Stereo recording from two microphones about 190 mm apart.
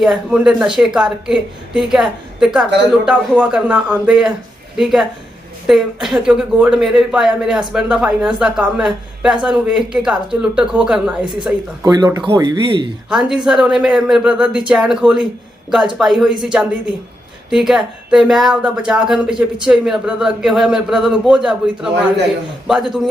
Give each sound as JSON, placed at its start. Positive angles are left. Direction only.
{"t": 0.0, "sound": "speech", "side_deg": -5}
{"t": 11.8, "sound": "speech", "side_deg": -20}
{"t": 13.1, "sound": "speech", "side_deg": -5}